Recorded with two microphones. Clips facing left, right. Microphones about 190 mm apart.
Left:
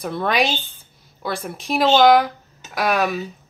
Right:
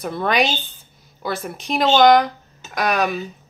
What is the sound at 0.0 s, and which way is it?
Speech, centre (ahead or behind).